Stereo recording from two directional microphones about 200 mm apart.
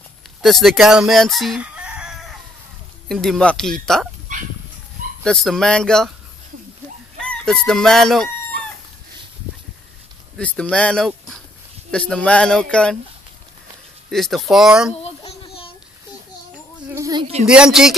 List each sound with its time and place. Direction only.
0.4 s speech: centre (ahead or behind)
3.1 s speech: centre (ahead or behind)
4.3 s bow-wow: 40° right (ahead or behind)
5.2 s speech: centre (ahead or behind)
7.2 s chicken: 5° left (ahead or behind)
10.3 s speech: 5° left (ahead or behind)
11.1 s a sound: centre (ahead or behind)
11.9 s speech: 5° left (ahead or behind)
14.1 s speech: centre (ahead or behind)
15.2 s a sound: 30° left (ahead or behind)
16.9 s a sound: 20° right (ahead or behind)
17.5 s speech: 5° right (ahead or behind)